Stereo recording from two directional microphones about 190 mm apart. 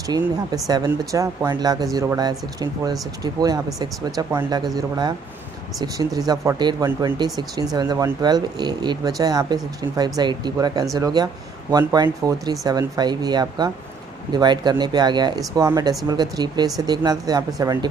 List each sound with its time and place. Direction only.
0.1 s speech: 20° right (ahead or behind)